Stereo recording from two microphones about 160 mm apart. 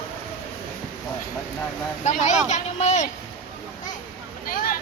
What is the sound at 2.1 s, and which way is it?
Speech, 50° left (ahead or behind).